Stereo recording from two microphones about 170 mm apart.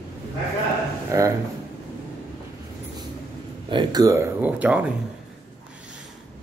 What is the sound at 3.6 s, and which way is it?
A man's voice, 25° right (ahead or behind).